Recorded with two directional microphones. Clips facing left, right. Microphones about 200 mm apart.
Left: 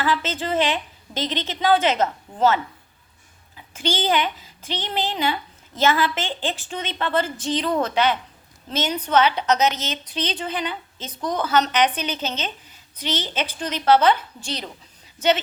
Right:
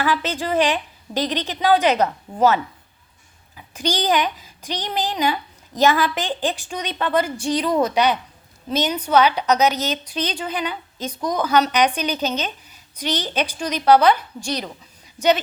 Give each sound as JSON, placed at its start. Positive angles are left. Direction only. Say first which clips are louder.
{"t": 0.0, "sound": "a woman's voice", "louder": "right 2 dB", "side_deg": -15}
{"t": 3.8, "sound": "a child's voice", "louder": "right 2 dB", "side_deg": -15}